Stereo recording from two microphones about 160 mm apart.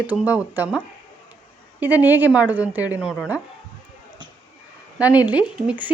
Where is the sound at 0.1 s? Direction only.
10° right (ahead or behind).